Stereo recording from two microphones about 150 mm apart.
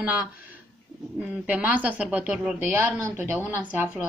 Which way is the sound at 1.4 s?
10° right (ahead or behind).